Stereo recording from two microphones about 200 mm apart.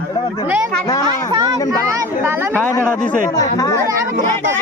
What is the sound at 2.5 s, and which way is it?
Speech, 10° left (ahead or behind).